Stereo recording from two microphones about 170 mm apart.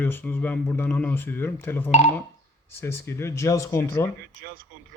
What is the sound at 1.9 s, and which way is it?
Speech, 40° left (ahead or behind).